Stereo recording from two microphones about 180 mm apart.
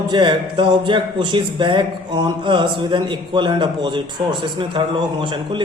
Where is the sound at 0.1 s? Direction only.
25° right (ahead or behind).